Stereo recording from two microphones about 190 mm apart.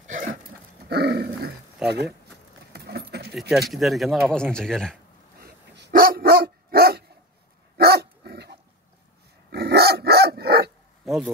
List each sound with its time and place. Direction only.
0.8 s dog: 55° right (ahead or behind)
1.8 s speech: 5° right (ahead or behind)
2.7 s a sound: 55° right (ahead or behind)
3.3 s speech: centre (ahead or behind)
5.4 s dog: 55° right (ahead or behind)
11.1 s a sound: 5° right (ahead or behind)